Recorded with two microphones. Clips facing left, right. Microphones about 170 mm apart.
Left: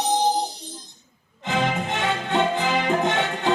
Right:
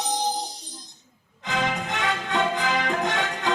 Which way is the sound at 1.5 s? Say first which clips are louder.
Left 3 dB; 25° left (ahead or behind).